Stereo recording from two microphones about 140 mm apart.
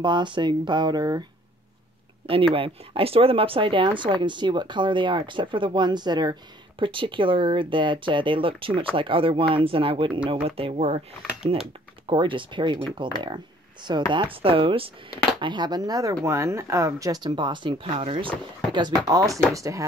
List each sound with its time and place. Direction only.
0.0 s speech: 35° right (ahead or behind)
2.5 s speech: 40° right (ahead or behind)
12.1 s speech: 35° right (ahead or behind)
19.0 s speech: 25° right (ahead or behind)